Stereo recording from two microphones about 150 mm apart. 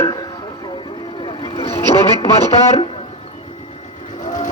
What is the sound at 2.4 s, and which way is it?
Speech, 45° left (ahead or behind).